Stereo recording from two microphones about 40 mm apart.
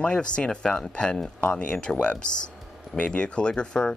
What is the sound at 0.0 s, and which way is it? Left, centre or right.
Speech, left.